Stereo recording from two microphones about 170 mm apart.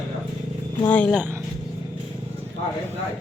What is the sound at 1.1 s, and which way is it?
Speech, 10° right (ahead or behind).